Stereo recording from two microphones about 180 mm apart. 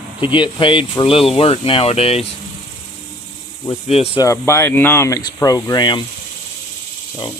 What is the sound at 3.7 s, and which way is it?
Speech, 35° left (ahead or behind).